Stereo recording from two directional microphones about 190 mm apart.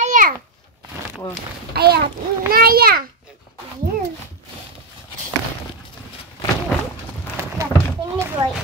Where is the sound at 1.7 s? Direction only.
55° right (ahead or behind).